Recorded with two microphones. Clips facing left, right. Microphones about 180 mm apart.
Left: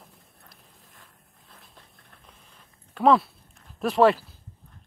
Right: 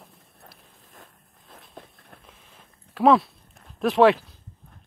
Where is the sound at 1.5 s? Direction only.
45° right (ahead or behind).